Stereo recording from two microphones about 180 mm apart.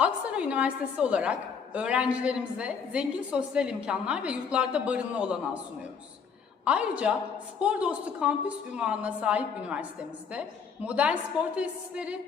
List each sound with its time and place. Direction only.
0.0 s a woman's voice: 5° right (ahead or behind)
6.7 s a woman's voice: 5° right (ahead or behind)
10.8 s a woman's voice: 5° right (ahead or behind)